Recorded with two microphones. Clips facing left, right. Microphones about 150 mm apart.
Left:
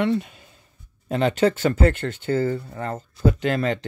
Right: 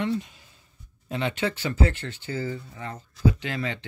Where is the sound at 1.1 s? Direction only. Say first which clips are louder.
Left 8 dB; 45° left (ahead or behind).